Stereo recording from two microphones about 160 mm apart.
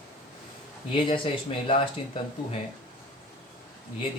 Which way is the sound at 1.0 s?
35° left (ahead or behind).